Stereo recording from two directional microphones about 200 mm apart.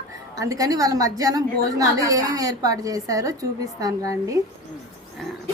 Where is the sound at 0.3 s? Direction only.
15° right (ahead or behind).